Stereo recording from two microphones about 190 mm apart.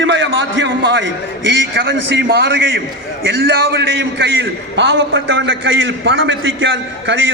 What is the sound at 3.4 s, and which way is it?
A man's voice, 75° right (ahead or behind).